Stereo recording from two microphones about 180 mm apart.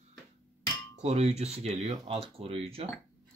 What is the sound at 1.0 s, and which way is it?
Speech, 35° right (ahead or behind).